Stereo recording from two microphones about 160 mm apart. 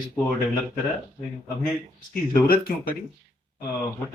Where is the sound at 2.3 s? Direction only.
70° left (ahead or behind).